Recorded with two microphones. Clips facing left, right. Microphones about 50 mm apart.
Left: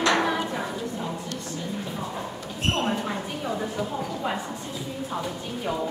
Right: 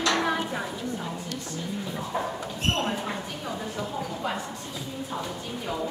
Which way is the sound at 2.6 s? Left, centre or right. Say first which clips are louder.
Left 2 dB; centre.